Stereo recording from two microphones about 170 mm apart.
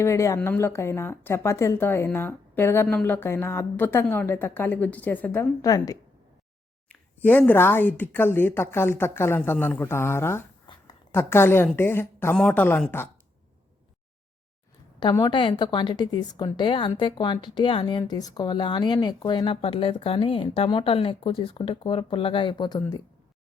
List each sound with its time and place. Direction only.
0.0 s speech: 15° left (ahead or behind)
6.8 s speech: 10° left (ahead or behind)
15.1 s speech: 25° left (ahead or behind)